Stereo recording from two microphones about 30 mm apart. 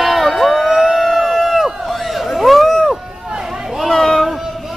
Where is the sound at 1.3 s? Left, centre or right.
Centre.